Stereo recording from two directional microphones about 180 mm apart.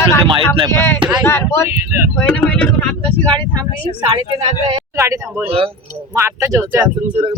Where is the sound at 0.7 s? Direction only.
15° left (ahead or behind).